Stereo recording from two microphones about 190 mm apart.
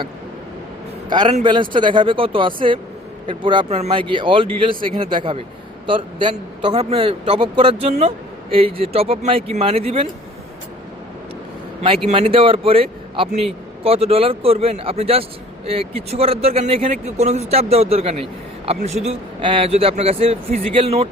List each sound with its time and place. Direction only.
1.1 s a man's voice: 25° right (ahead or behind)
12.0 s a man's voice: 30° right (ahead or behind)